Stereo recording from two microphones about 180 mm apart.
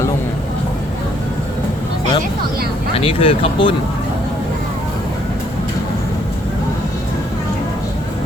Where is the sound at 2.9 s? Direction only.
30° left (ahead or behind).